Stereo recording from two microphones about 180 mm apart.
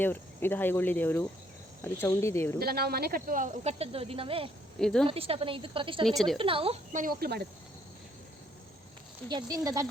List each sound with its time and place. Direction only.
0.0 s speech: 10° left (ahead or behind)
2.6 s speech: 60° right (ahead or behind); by 4.4 s 30° right (ahead or behind)
4.8 s a woman's voice: 5° left (ahead or behind)
5.0 s a woman's voice: 30° right (ahead or behind)
6.1 s a woman's voice: centre (ahead or behind)
6.4 s speech: 30° right (ahead or behind)
6.9 s speech: 50° right (ahead or behind)
9.2 s speech: 10° left (ahead or behind)